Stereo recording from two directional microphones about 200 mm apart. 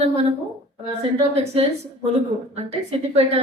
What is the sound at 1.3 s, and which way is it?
A woman's voice, 30° right (ahead or behind).